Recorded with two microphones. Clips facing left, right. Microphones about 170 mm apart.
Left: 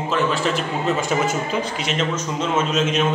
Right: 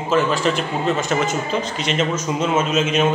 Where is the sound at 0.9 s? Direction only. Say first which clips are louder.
Even; 10° left (ahead or behind).